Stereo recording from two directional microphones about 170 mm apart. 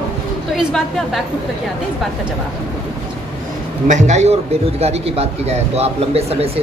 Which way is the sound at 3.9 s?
45° right (ahead or behind).